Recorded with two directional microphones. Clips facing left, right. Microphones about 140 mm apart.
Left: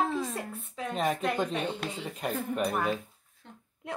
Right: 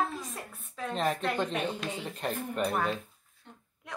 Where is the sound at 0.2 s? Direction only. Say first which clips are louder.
Left 7 dB; 90° left.